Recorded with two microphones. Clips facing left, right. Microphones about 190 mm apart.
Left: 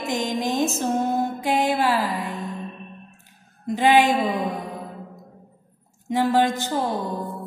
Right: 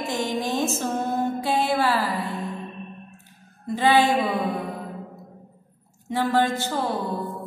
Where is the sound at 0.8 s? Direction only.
15° left (ahead or behind).